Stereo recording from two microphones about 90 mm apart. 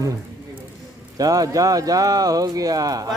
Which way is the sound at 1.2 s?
40° right (ahead or behind).